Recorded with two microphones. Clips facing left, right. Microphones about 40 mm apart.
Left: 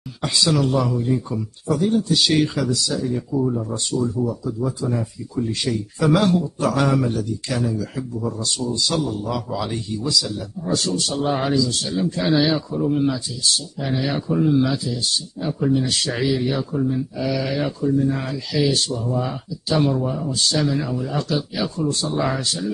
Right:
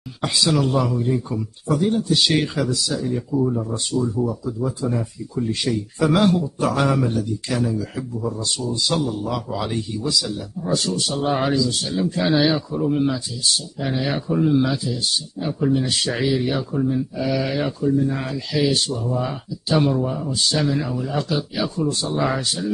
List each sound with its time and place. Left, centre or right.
0.2 s speech: centre
3.9 s speech: centre
4.8 s speech: centre
5.9 s speech: centre